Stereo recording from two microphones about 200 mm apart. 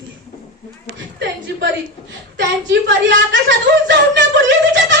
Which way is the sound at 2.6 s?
65° right (ahead or behind).